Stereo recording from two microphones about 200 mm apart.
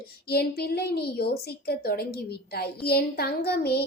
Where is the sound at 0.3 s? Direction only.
50° left (ahead or behind).